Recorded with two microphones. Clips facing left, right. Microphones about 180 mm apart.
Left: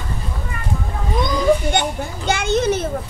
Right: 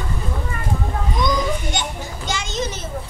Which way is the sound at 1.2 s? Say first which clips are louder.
Left 6 dB; 60° left (ahead or behind).